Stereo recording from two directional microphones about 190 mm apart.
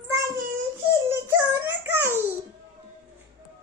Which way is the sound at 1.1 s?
10° right (ahead or behind).